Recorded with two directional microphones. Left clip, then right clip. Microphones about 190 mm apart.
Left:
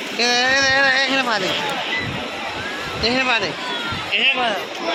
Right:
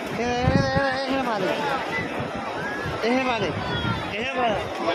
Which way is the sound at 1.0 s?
Centre (ahead or behind).